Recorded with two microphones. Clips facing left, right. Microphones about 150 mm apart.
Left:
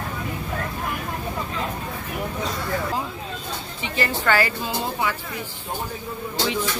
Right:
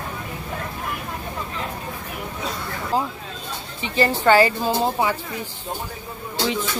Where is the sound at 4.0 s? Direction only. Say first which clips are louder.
Right 6 dB; 25° right (ahead or behind).